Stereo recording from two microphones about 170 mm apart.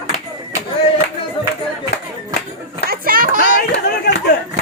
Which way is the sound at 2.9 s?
60° right (ahead or behind).